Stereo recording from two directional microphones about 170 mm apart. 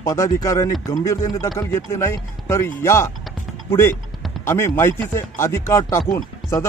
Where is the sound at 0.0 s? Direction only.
20° left (ahead or behind).